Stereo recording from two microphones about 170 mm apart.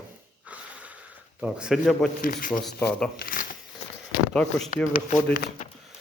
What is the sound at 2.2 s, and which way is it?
Speech, 55° left (ahead or behind).